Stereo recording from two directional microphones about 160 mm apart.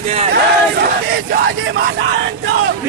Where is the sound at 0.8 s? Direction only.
75° right (ahead or behind).